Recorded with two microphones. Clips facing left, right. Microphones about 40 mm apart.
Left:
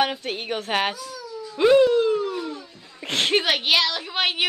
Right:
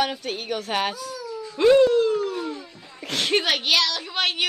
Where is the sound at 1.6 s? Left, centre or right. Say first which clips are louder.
Even; centre.